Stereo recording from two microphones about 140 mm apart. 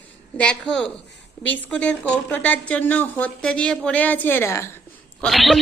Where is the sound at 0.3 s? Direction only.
5° left (ahead or behind).